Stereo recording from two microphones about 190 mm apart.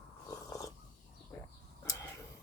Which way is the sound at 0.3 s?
20° left (ahead or behind).